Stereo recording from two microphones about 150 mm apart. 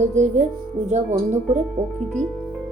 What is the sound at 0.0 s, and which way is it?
Speech, 50° right (ahead or behind).